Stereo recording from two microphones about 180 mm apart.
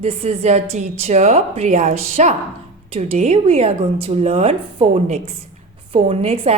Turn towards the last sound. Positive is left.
turn(degrees=-35)  # may be behind; listen again after turning